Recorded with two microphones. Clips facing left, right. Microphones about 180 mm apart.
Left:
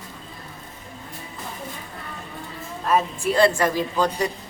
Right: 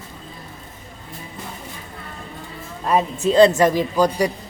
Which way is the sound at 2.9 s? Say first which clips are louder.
Right 4 dB; 20° right (ahead or behind).